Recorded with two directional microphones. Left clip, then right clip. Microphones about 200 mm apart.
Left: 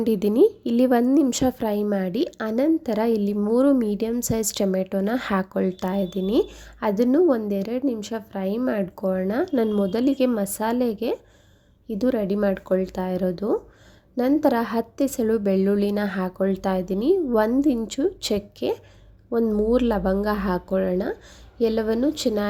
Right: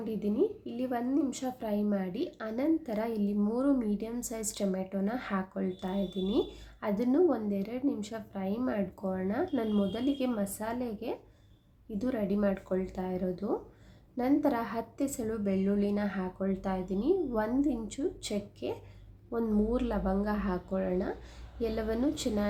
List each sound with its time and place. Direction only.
0.0 s a woman's voice: 55° left (ahead or behind); by 22.4 s 35° left (ahead or behind)